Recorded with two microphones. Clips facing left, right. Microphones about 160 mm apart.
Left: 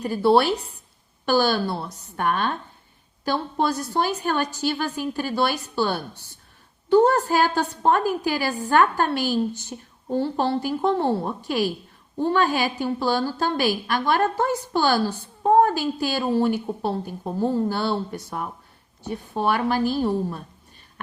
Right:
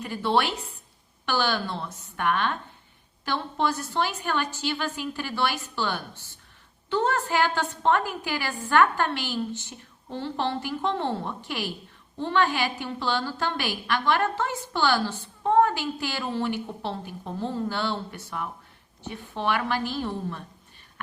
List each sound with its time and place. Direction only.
0.0 s a woman's voice: 35° left (ahead or behind)
6.9 s a woman's voice: 35° left (ahead or behind)